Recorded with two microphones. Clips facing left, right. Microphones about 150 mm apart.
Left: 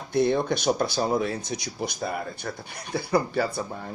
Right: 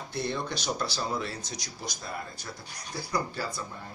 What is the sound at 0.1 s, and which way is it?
Speech, 55° left (ahead or behind).